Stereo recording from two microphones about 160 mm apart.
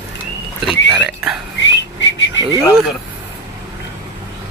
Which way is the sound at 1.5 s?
90° left.